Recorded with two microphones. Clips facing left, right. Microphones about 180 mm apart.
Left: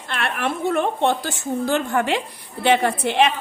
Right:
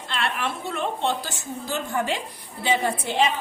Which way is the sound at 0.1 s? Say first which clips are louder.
Left 3 dB; 55° left (ahead or behind).